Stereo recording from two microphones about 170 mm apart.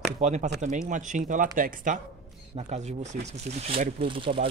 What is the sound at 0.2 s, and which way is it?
Speech, 45° right (ahead or behind).